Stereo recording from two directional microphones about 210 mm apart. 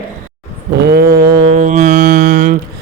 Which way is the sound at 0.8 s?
50° right (ahead or behind).